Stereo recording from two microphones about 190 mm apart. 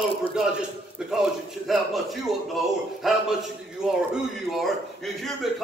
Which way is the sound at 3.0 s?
Centre (ahead or behind).